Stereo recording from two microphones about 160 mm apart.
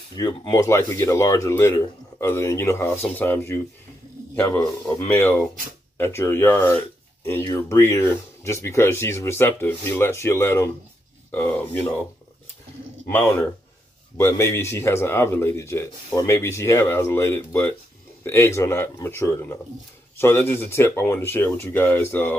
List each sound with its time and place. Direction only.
0.1 s a man's voice: 25° left (ahead or behind)
13.1 s a man's voice: 15° left (ahead or behind)